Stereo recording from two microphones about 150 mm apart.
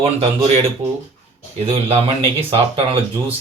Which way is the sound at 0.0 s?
40° right (ahead or behind).